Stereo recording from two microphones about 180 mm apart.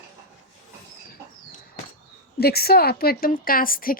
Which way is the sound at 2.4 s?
60° left (ahead or behind).